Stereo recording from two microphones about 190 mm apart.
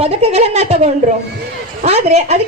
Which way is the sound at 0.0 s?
30° right (ahead or behind).